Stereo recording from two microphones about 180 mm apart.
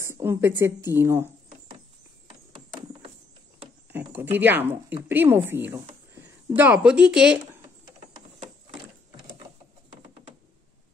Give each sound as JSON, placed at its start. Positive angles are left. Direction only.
{"t": 0.0, "sound": "a woman's voice", "side_deg": -15}
{"t": 2.7, "sound": "a sound", "side_deg": -25}
{"t": 3.9, "sound": "speech", "side_deg": -10}